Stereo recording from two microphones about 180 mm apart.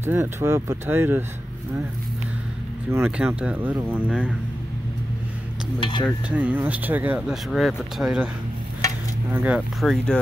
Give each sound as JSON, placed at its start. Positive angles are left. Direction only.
{"t": 0.0, "sound": "speech", "side_deg": -10}
{"t": 2.9, "sound": "speech", "side_deg": -10}
{"t": 5.8, "sound": "stir", "side_deg": 25}
{"t": 6.0, "sound": "speech", "side_deg": -5}
{"t": 9.3, "sound": "speech", "side_deg": -10}